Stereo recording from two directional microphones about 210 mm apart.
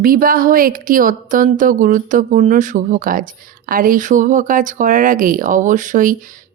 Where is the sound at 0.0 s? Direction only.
40° right (ahead or behind).